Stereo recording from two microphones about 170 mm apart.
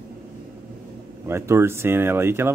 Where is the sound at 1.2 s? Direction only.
15° right (ahead or behind).